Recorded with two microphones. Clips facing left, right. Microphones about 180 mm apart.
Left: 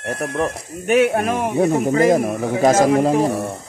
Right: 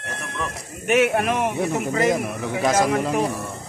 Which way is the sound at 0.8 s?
35° left (ahead or behind).